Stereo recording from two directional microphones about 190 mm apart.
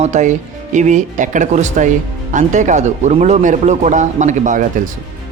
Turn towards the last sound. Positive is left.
turn(degrees=-40)  # may be behind; listen again after turning